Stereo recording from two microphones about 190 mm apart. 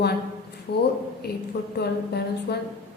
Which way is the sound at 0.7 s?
60° left (ahead or behind).